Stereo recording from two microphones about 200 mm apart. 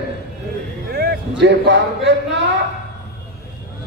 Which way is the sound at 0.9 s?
50° right (ahead or behind).